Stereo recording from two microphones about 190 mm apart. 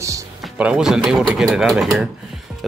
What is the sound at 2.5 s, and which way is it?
Music, 5° right (ahead or behind).